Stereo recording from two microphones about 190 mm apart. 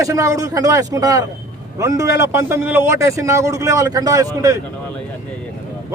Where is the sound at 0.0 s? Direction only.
15° right (ahead or behind).